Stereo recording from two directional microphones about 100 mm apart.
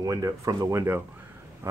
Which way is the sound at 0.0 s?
35° right (ahead or behind).